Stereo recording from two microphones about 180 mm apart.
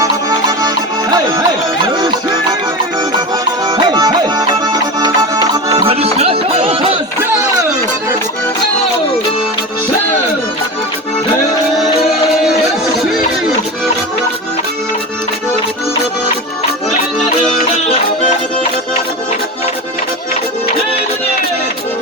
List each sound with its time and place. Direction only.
0.0 s music: 20° right (ahead or behind)
3.7 s music: 25° right (ahead or behind)
5.8 s music: 35° right (ahead or behind)